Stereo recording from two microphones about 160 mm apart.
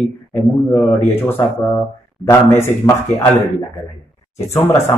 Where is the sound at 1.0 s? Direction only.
15° left (ahead or behind).